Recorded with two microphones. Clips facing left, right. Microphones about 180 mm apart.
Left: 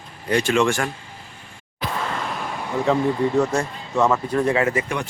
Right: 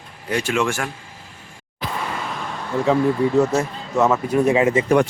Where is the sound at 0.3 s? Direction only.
5° right (ahead or behind).